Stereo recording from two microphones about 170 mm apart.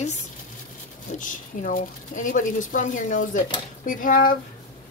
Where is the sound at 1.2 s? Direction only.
50° left (ahead or behind).